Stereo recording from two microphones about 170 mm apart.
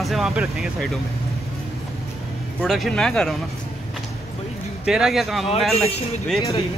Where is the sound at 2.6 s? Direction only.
Centre (ahead or behind).